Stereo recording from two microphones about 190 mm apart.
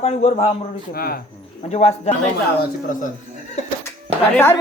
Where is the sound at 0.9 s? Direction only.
50° left (ahead or behind).